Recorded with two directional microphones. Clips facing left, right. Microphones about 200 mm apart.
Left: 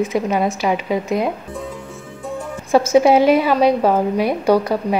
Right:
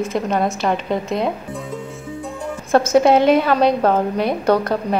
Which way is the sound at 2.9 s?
5° left (ahead or behind).